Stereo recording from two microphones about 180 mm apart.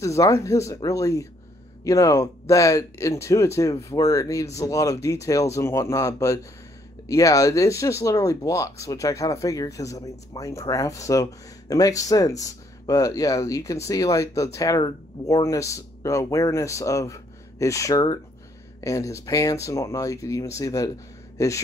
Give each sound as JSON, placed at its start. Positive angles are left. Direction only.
{"t": 0.0, "sound": "speech", "side_deg": 15}